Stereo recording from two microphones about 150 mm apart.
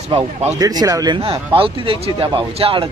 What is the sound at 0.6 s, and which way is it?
Speech, 25° right (ahead or behind).